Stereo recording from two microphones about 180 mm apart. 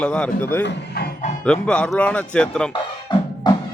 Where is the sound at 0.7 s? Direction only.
60° left (ahead or behind).